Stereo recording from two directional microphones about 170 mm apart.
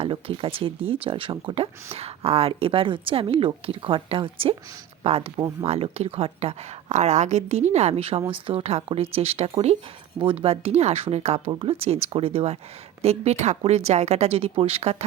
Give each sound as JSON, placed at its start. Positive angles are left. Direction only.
{"t": 0.0, "sound": "speech", "side_deg": -35}